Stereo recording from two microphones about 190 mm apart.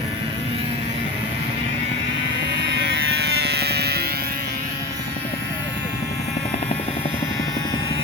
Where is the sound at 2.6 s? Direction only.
65° right (ahead or behind).